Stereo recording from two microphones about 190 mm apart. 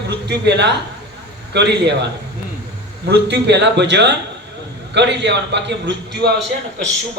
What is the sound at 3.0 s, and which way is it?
A man's voice, 60° right (ahead or behind).